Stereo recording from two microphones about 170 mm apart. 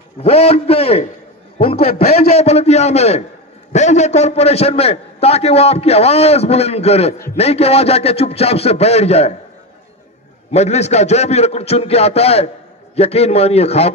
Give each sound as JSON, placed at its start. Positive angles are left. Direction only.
{"t": 0.2, "sound": "a man's voice", "side_deg": 35}
{"t": 10.5, "sound": "a man's voice", "side_deg": 40}